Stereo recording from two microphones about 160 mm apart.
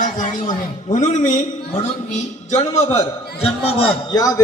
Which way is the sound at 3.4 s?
35° left (ahead or behind).